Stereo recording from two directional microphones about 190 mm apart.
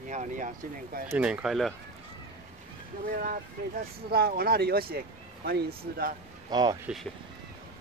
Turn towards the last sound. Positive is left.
turn(degrees=0)  # may be behind; listen again after turning